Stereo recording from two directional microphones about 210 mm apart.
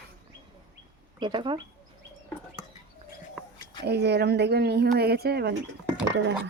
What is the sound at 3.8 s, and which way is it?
Speech, 50° right (ahead or behind).